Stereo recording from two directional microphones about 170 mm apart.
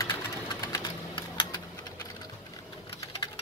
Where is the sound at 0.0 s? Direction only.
15° left (ahead or behind).